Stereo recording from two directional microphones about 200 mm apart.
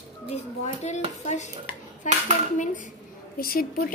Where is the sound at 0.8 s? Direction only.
35° left (ahead or behind).